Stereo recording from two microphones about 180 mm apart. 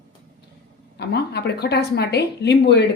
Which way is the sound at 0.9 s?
65° left (ahead or behind).